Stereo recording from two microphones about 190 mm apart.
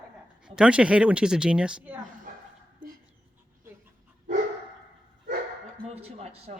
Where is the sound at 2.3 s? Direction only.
45° right (ahead or behind).